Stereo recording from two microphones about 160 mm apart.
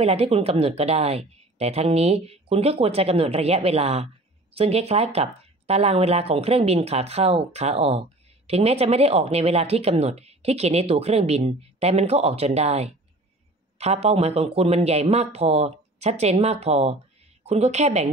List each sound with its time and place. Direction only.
0.0 s speech: 40° right (ahead or behind)